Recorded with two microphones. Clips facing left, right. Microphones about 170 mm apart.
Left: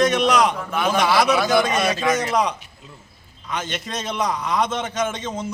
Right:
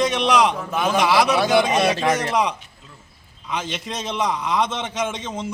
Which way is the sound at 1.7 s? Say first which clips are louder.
Right 1 dB; 30° right (ahead or behind).